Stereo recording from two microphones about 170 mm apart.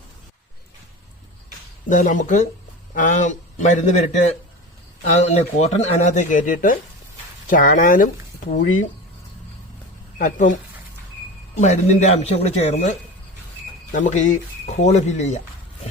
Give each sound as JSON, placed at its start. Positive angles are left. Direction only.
{"t": 1.9, "sound": "speech", "side_deg": 50}
{"t": 10.2, "sound": "speech", "side_deg": 50}